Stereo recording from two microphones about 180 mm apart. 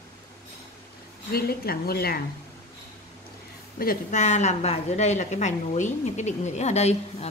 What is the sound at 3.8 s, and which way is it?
A woman's voice, 45° left (ahead or behind).